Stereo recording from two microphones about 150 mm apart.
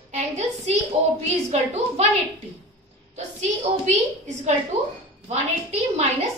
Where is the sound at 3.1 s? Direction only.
50° right (ahead or behind).